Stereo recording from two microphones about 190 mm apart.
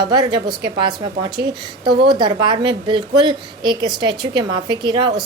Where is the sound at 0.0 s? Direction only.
25° right (ahead or behind).